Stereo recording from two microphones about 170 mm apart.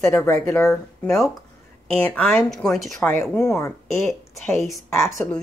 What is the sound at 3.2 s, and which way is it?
Speech, 15° left (ahead or behind).